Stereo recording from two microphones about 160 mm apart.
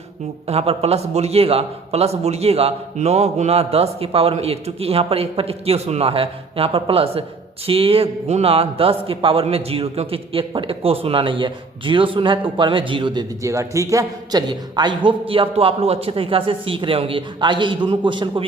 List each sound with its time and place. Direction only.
0.4 s a man's voice: 40° right (ahead or behind)